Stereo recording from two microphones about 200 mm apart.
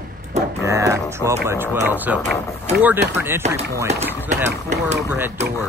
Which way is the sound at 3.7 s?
15° right (ahead or behind).